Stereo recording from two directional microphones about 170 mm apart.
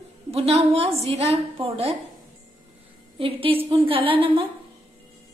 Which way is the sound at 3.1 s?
30° right (ahead or behind).